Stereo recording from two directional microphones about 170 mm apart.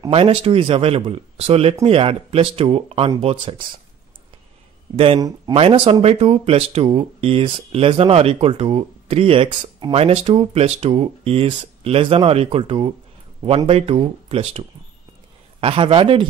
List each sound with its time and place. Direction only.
0.0 s speech: 30° right (ahead or behind)
4.9 s speech: 35° right (ahead or behind)
15.6 s speech: 30° right (ahead or behind)